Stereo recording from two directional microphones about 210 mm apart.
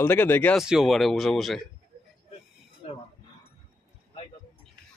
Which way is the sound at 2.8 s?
30° left (ahead or behind).